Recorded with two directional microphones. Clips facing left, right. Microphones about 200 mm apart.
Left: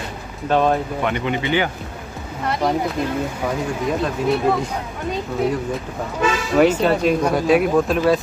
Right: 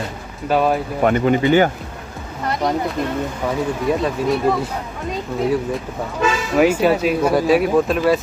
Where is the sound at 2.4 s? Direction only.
5° left (ahead or behind).